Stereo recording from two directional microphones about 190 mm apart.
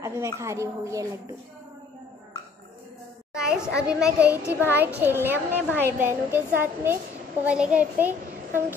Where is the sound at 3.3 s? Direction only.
5° right (ahead or behind).